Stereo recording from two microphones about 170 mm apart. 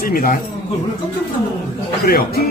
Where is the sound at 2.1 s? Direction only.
60° left (ahead or behind).